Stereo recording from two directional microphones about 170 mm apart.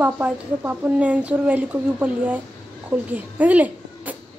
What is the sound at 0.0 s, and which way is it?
Speech, 10° right (ahead or behind).